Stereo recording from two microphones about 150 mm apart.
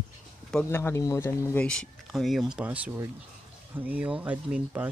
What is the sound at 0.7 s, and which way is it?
Speech, 15° left (ahead or behind).